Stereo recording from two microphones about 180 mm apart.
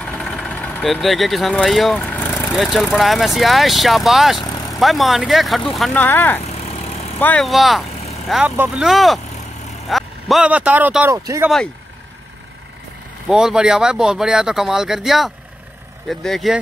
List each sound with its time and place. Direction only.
0.0 s vehicle: 5° left (ahead or behind)
2.5 s speech: centre (ahead or behind)
6.7 s vehicle: 35° left (ahead or behind)
7.2 s speech: 5° left (ahead or behind); by 11.5 s 15° right (ahead or behind)
13.3 s speech: 5° right (ahead or behind)